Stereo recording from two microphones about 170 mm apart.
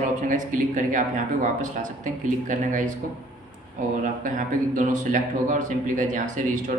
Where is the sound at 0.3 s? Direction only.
50° right (ahead or behind).